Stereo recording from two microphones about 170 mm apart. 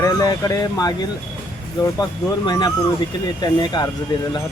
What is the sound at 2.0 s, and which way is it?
Speech, 25° left (ahead or behind).